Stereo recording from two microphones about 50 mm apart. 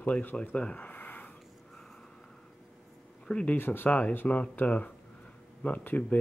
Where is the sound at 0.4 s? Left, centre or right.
Left.